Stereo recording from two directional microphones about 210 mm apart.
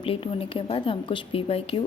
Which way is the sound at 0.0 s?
25° left (ahead or behind).